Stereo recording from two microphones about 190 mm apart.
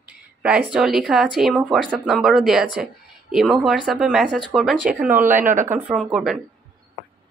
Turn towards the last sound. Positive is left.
turn(degrees=0)  # may be behind; listen again after turning